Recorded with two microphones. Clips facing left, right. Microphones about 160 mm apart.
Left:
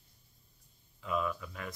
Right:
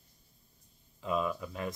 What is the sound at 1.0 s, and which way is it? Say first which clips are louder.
Speech: right 2 dB; 25° right (ahead or behind).